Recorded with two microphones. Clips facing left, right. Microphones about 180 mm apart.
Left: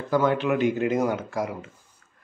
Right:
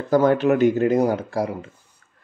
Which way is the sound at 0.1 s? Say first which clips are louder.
Right 5 dB; 40° right (ahead or behind).